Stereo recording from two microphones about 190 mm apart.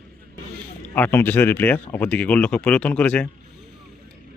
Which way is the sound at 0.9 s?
10° left (ahead or behind).